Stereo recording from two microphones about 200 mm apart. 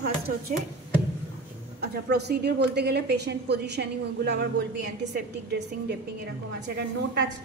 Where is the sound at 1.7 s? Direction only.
55° right (ahead or behind).